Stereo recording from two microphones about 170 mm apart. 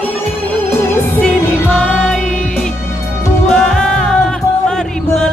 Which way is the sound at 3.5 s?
5° left (ahead or behind).